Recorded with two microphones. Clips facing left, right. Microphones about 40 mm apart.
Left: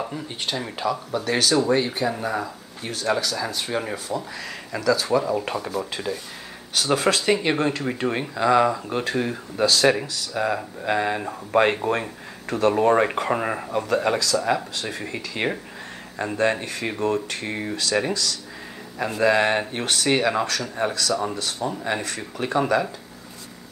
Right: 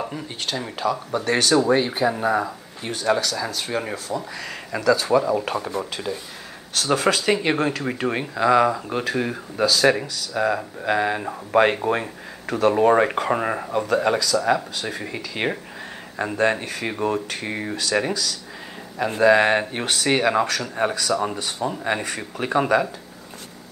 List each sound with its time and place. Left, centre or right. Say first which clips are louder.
0.5 s speech: right 1 dB; centre
3.2 s speech: right 1 dB; centre
7.5 s speech: even; centre
17.1 s speech: even; right
17.5 s speech: right 1 dB; centre